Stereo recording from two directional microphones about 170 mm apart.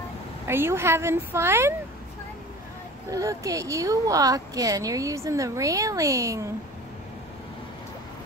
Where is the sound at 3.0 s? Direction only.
20° right (ahead or behind).